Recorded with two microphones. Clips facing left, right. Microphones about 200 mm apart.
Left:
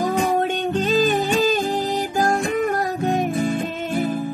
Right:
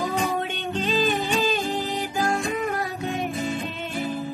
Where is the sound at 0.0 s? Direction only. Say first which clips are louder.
Left 6 dB; 50° left (ahead or behind).